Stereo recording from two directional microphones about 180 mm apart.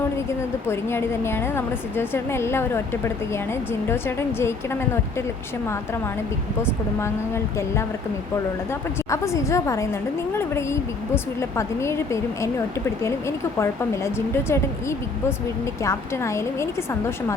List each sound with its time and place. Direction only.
0.3 s a woman's voice: 15° left (ahead or behind)
6.6 s a woman's voice: 15° left (ahead or behind)
9.0 s a woman's voice: 15° left (ahead or behind)